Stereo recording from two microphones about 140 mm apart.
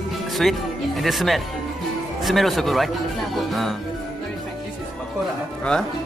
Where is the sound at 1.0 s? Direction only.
Centre (ahead or behind).